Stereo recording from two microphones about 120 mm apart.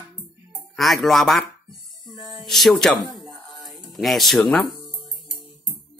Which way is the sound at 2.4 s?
Centre (ahead or behind).